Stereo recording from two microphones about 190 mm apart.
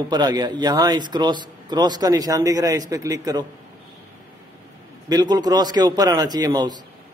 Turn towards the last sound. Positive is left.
turn(degrees=-20)  # may be behind; listen again after turning